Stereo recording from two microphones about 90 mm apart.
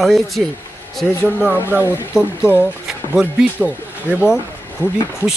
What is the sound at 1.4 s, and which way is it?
Speech, 20° right (ahead or behind).